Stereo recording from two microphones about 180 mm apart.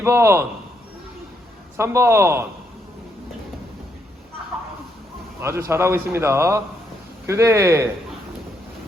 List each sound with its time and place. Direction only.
0.0 s a man's voice: 15° right (ahead or behind)
1.7 s a man's voice: 15° right (ahead or behind)
5.4 s a man's voice: 15° right (ahead or behind)